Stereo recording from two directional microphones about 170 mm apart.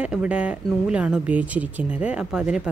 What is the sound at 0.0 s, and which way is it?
Speech, 5° right (ahead or behind).